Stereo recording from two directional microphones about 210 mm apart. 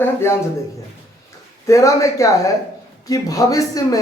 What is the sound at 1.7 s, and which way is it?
A man's voice, 15° left (ahead or behind).